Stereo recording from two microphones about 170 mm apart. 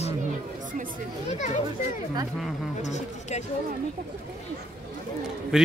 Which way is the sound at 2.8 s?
45° left (ahead or behind).